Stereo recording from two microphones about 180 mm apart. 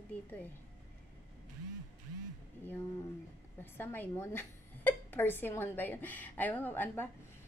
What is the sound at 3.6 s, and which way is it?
A woman's voice, 10° left (ahead or behind).